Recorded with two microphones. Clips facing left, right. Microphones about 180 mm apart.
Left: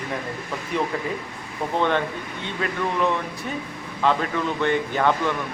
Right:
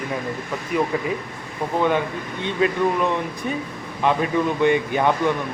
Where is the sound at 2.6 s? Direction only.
20° right (ahead or behind).